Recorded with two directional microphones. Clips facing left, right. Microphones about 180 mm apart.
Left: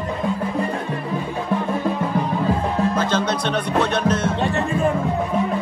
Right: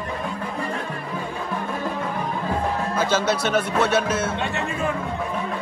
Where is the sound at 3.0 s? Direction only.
5° right (ahead or behind).